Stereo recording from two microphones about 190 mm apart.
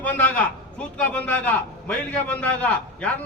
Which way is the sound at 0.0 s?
10° left (ahead or behind).